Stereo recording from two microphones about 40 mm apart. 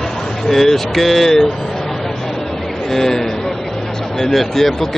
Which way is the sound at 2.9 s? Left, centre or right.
Centre.